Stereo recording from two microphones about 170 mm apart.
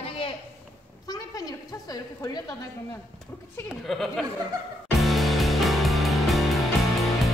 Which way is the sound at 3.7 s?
Centre (ahead or behind).